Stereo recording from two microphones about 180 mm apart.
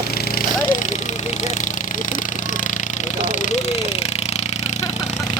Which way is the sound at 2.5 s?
45° left (ahead or behind).